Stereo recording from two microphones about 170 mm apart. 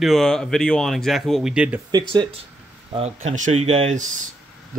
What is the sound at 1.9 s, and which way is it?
Speech, 30° right (ahead or behind).